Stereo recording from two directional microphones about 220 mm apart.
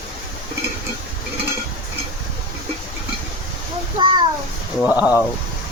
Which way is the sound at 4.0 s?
20° right (ahead or behind).